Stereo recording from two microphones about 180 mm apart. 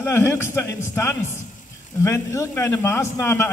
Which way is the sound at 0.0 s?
15° left (ahead or behind).